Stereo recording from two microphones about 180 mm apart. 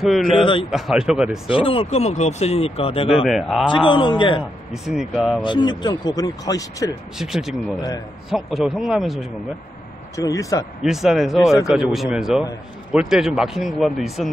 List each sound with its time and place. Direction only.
0.0 s speech: centre (ahead or behind)
0.4 s speech: 30° left (ahead or behind)
0.7 s speech: centre (ahead or behind)
1.5 s speech: 30° left (ahead or behind)
3.3 s speech: centre (ahead or behind)
3.6 s speech: 25° left (ahead or behind)
4.8 s speech: 5° right (ahead or behind)
5.4 s speech: 25° left (ahead or behind)
7.2 s speech: centre (ahead or behind)
10.1 s speech: 20° left (ahead or behind)
10.8 s speech: centre (ahead or behind)